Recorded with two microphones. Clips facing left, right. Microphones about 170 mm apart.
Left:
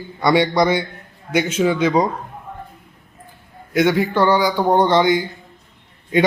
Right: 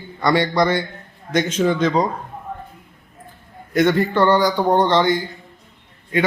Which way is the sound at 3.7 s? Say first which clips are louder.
Even; 5° left (ahead or behind).